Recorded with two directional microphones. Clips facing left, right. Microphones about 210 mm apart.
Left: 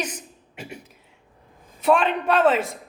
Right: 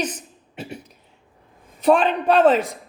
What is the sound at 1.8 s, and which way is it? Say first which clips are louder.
Speech: right 3 dB; 35° right (ahead or behind).